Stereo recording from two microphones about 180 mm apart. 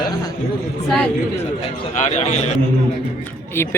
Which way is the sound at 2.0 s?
40° left (ahead or behind).